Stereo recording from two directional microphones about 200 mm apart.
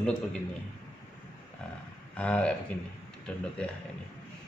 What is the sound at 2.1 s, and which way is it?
Speech, 5° left (ahead or behind).